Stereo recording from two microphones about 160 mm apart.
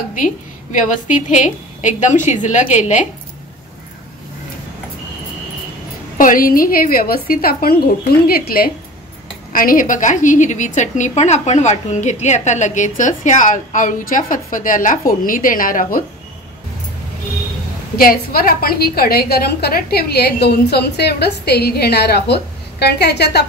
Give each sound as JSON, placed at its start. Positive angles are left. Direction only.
{"t": 0.1, "sound": "a woman's voice", "side_deg": 55}
{"t": 6.1, "sound": "a woman's voice", "side_deg": 60}
{"t": 17.9, "sound": "a woman's voice", "side_deg": 65}